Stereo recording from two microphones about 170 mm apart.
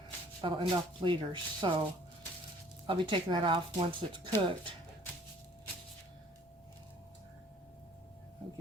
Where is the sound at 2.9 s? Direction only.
30° right (ahead or behind).